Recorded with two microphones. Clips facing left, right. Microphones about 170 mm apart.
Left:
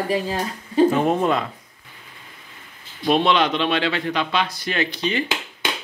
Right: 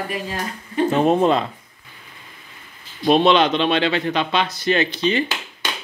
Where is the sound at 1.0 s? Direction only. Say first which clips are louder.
Right 3 dB; 25° right (ahead or behind).